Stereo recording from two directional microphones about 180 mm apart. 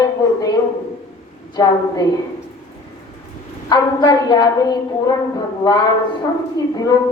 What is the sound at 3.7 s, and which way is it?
A woman's voice, 20° left (ahead or behind).